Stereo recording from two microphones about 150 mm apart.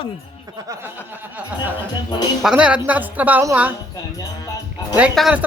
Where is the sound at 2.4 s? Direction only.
5° right (ahead or behind).